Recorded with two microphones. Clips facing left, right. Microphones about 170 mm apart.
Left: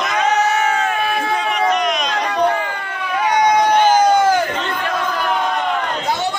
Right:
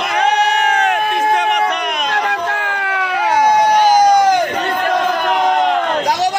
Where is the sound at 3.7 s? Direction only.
10° right (ahead or behind).